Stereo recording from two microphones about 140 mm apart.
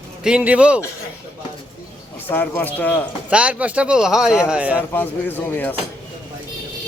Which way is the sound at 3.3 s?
10° right (ahead or behind).